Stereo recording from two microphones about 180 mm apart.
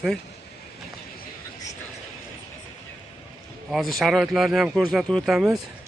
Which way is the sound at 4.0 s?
Centre (ahead or behind).